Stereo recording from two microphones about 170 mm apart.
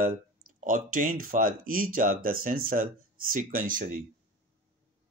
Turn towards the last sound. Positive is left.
turn(degrees=-50)  # may be behind; listen again after turning